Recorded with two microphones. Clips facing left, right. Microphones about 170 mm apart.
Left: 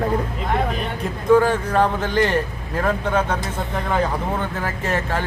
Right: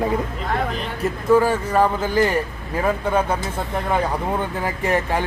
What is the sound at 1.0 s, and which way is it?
Speech, 5° right (ahead or behind).